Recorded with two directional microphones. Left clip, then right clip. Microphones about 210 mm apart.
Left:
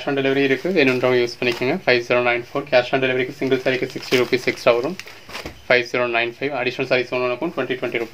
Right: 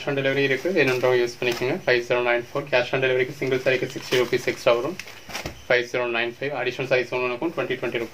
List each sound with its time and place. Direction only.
0.0 s speech: 45° left (ahead or behind)